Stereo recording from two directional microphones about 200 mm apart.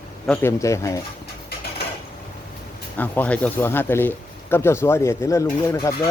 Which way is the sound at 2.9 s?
10° left (ahead or behind).